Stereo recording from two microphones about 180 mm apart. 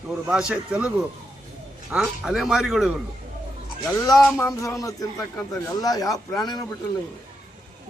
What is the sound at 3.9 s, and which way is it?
A man's voice, 15° left (ahead or behind).